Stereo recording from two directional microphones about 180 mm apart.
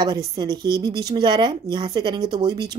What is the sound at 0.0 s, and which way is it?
Speech, 20° right (ahead or behind).